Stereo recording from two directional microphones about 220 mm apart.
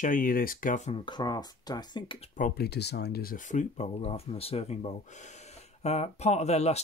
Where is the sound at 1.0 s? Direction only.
20° left (ahead or behind).